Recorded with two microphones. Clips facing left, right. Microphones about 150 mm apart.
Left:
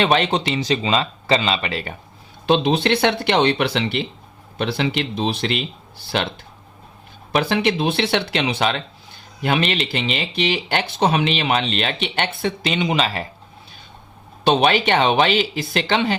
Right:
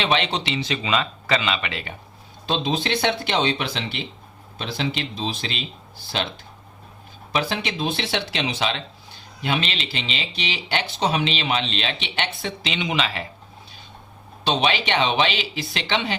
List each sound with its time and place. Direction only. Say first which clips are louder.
0.0 s speech: left 5 dB; 50° left (ahead or behind)
2.5 s speech: left 7 dB; 65° left (ahead or behind)
7.3 s speech: left 6 dB; 55° left (ahead or behind); by 13.2 s 40° left (ahead or behind)
14.4 s speech: left 6 dB; 50° left (ahead or behind)